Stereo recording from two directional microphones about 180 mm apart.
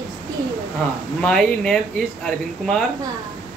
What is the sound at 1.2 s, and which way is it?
Speech, 5° left (ahead or behind).